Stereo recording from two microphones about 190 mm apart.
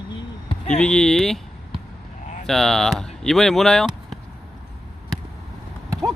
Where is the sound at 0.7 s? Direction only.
5° left (ahead or behind).